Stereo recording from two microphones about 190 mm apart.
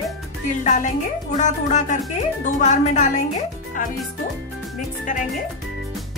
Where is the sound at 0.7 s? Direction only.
40° left (ahead or behind).